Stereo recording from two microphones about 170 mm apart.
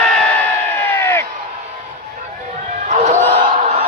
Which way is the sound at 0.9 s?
15° left (ahead or behind).